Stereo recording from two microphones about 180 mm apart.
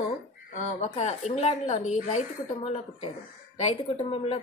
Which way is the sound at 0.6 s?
40° left (ahead or behind).